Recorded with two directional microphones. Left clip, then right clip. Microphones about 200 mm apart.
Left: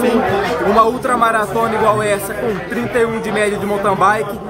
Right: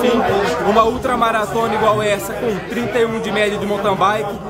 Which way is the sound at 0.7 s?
Centre (ahead or behind).